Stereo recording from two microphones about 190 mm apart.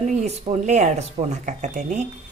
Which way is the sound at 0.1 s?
35° right (ahead or behind).